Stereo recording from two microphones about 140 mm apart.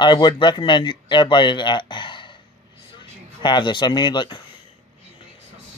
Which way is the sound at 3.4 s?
35° left (ahead or behind).